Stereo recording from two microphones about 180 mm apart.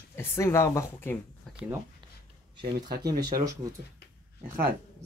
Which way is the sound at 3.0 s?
20° right (ahead or behind).